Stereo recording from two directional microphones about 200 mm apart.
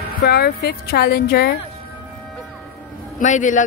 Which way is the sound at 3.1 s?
40° left (ahead or behind).